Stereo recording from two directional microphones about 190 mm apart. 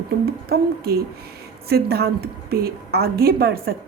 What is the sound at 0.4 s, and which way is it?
A woman's voice, 55° right (ahead or behind).